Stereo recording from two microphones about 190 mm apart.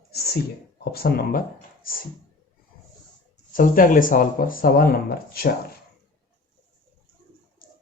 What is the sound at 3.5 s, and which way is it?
Speech, 45° left (ahead or behind).